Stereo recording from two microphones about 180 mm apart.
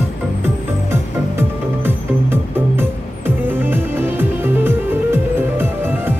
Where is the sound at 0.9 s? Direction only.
15° right (ahead or behind).